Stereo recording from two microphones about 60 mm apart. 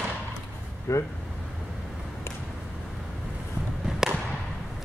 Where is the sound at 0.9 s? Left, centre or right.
Left.